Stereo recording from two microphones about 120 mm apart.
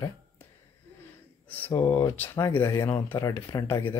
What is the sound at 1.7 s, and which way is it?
Speech, 20° left (ahead or behind).